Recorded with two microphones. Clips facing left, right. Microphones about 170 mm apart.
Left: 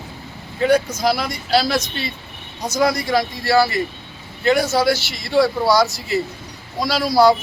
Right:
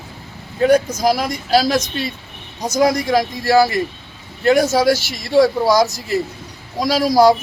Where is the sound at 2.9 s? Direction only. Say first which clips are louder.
Right 3 dB; 45° right (ahead or behind).